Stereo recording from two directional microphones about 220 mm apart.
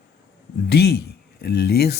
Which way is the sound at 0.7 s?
45° left (ahead or behind).